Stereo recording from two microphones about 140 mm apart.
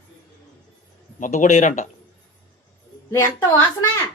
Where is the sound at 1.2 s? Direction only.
60° left (ahead or behind).